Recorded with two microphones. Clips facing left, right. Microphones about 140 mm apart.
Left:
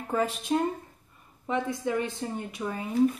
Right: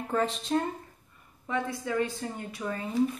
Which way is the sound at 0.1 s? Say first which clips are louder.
Left 1 dB; 10° left (ahead or behind).